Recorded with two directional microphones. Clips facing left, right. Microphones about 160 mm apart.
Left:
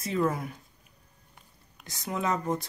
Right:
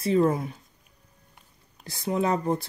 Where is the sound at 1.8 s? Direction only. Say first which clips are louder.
Right 6 dB; 30° right (ahead or behind).